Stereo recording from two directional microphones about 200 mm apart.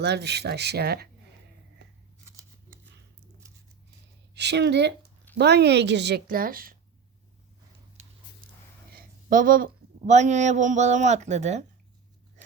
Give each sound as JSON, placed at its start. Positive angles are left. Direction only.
{"t": 0.0, "sound": "a woman's voice", "side_deg": -55}
{"t": 4.4, "sound": "a woman's voice", "side_deg": -60}
{"t": 8.0, "sound": "dog", "side_deg": -35}
{"t": 8.4, "sound": "dog", "side_deg": -45}
{"t": 8.9, "sound": "a sound", "side_deg": -45}
{"t": 10.1, "sound": "a man's voice", "side_deg": -35}